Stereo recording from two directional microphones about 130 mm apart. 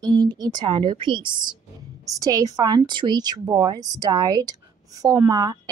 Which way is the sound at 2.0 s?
25° right (ahead or behind).